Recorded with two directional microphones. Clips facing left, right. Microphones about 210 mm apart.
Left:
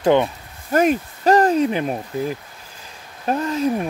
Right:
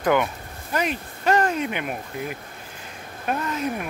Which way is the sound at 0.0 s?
30° left (ahead or behind).